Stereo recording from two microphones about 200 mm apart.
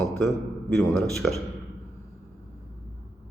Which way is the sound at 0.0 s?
5° left (ahead or behind).